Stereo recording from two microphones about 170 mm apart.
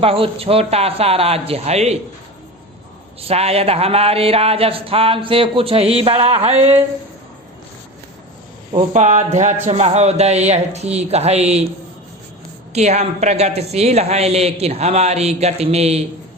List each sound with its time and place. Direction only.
0.0 s speech: 35° right (ahead or behind)
3.2 s speech: 35° right (ahead or behind)
8.9 s speech: 45° right (ahead or behind)
12.7 s speech: 40° right (ahead or behind)